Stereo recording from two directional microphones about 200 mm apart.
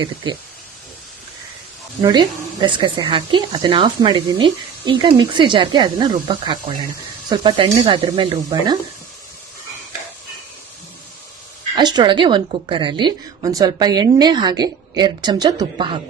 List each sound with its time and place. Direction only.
2.0 s speech: 20° right (ahead or behind)
11.8 s speech: 20° right (ahead or behind)